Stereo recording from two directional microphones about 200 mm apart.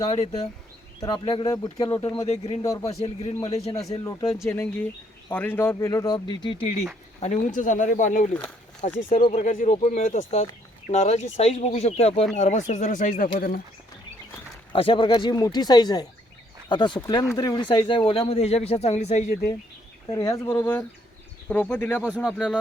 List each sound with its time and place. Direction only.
0.1 s speech: 30° left (ahead or behind)
4.4 s speech: 10° left (ahead or behind)
7.2 s speech: 35° left (ahead or behind)
14.7 s speech: 25° left (ahead or behind)
20.1 s speech: 15° left (ahead or behind); by 22.5 s 5° right (ahead or behind)